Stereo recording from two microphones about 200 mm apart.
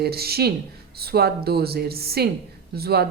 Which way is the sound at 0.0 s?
50° right (ahead or behind).